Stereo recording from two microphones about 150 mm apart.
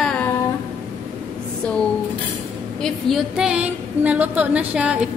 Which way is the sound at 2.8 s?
Centre (ahead or behind).